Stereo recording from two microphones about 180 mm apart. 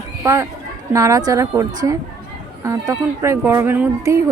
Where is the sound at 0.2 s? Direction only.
15° right (ahead or behind).